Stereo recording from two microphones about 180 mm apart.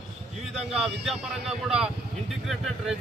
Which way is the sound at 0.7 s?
Centre (ahead or behind).